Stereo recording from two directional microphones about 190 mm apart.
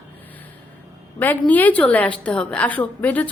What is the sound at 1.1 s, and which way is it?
A woman's voice, 10° left (ahead or behind).